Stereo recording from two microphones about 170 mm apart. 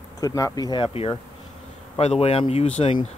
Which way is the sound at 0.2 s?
20° left (ahead or behind).